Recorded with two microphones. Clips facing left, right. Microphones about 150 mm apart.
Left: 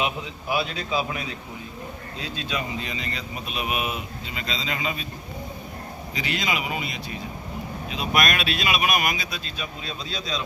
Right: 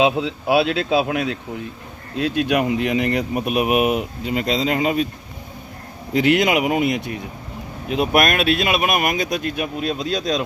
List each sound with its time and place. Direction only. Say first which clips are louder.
0.0 s speech: right 10 dB; 90° right; by 5.0 s 55° right (ahead or behind)
6.1 s speech: right 12 dB; 65° right (ahead or behind); by 10.4 s 50° right (ahead or behind)